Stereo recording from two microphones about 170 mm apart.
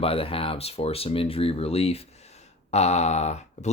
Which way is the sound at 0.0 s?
35° left (ahead or behind).